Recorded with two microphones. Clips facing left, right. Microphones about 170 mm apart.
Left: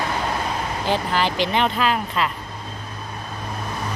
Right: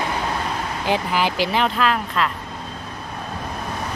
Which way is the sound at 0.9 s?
10° right (ahead or behind).